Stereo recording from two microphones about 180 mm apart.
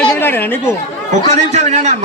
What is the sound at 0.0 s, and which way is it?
Chatter, 10° left (ahead or behind).